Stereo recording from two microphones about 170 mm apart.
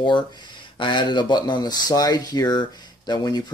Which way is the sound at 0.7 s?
25° left (ahead or behind).